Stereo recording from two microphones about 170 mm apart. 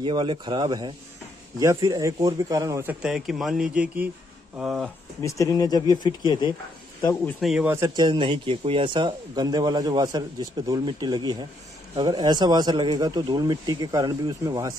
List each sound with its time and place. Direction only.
0.0 s a man's voice: 30° right (ahead or behind); by 4.8 s centre (ahead or behind)
5.2 s speech: 20° left (ahead or behind)
7.2 s speech: centre (ahead or behind)
7.6 s a man's voice: 15° right (ahead or behind)